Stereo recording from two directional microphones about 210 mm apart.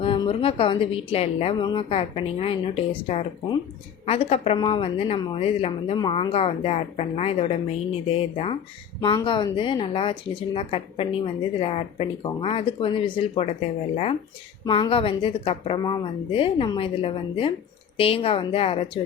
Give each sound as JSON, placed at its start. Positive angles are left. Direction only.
{"t": 0.0, "sound": "speech", "side_deg": 25}